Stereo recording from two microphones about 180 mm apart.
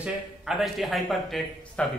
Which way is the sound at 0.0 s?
5° right (ahead or behind).